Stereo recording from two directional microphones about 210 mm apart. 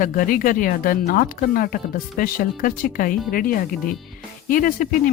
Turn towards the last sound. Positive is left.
turn(degrees=40)  # may be behind; listen again after turning